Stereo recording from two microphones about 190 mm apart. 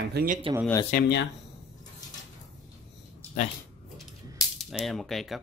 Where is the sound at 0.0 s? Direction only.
55° right (ahead or behind).